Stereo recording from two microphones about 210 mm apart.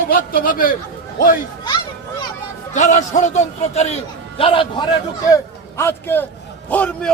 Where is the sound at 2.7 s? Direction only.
35° left (ahead or behind).